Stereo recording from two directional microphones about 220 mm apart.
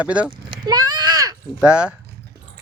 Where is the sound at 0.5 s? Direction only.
20° right (ahead or behind).